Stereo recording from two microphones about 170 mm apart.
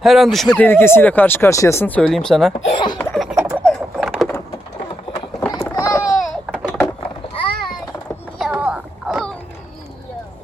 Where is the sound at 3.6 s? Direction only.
5° left (ahead or behind).